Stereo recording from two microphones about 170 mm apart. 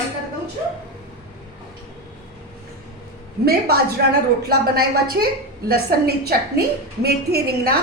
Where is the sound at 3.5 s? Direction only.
70° right (ahead or behind).